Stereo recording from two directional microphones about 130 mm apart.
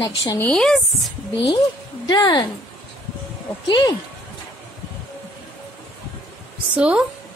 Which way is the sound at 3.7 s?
35° left (ahead or behind).